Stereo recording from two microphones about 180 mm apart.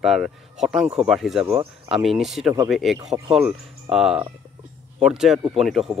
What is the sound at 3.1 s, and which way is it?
Speech, 35° right (ahead or behind).